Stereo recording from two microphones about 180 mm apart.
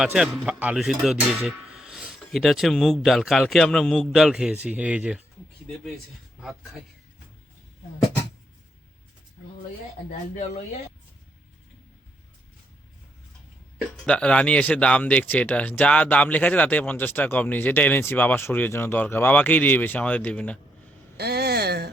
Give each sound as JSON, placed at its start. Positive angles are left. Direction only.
{"t": 0.0, "sound": "speech", "side_deg": -5}
{"t": 6.4, "sound": "speech", "side_deg": 0}
{"t": 10.1, "sound": "speech", "side_deg": 45}
{"t": 14.0, "sound": "speech", "side_deg": 5}
{"t": 21.2, "sound": "speech", "side_deg": -65}